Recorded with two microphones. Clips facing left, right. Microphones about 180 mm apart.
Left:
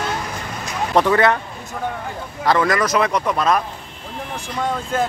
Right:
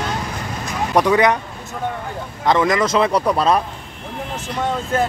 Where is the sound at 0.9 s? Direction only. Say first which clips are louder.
Right 1 dB; 15° right (ahead or behind).